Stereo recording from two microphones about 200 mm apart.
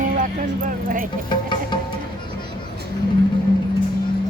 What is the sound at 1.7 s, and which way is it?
Music, 25° left (ahead or behind).